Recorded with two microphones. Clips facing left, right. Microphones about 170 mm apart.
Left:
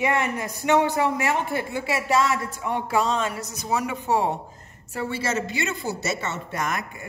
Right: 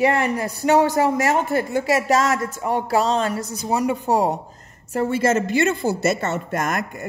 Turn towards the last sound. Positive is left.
turn(degrees=-45)  # may be behind; listen again after turning